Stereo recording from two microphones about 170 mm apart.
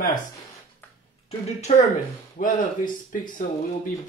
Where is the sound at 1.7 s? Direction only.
40° left (ahead or behind).